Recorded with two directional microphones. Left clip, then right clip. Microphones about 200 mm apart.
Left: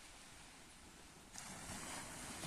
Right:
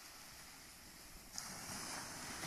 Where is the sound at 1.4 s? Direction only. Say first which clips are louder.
Right 3 dB; centre (ahead or behind).